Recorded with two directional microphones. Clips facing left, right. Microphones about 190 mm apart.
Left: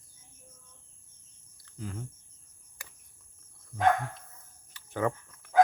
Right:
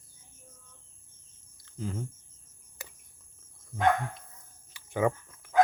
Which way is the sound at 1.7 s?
25° right (ahead or behind).